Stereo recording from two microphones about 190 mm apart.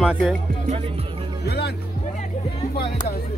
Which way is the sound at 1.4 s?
55° left (ahead or behind).